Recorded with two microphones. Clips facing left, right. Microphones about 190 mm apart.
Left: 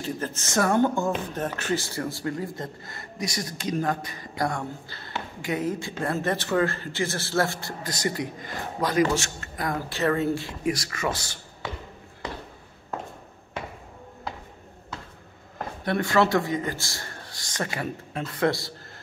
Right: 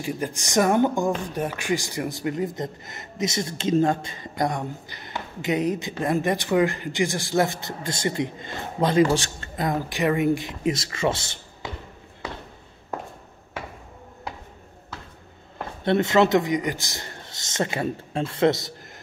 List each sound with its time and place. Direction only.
0.0 s speech: 15° right (ahead or behind)
15.8 s speech: 25° right (ahead or behind)